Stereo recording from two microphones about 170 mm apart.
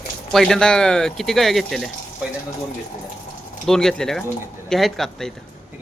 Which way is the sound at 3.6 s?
Centre (ahead or behind).